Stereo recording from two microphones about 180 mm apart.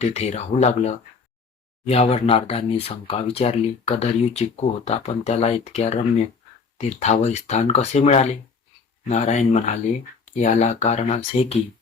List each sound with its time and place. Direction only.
0.0 s speech: 40° left (ahead or behind)